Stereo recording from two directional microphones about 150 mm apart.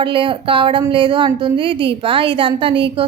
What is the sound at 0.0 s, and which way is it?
A woman's voice, 35° right (ahead or behind).